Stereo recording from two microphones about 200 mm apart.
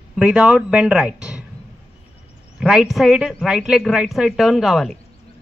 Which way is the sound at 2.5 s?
5° right (ahead or behind).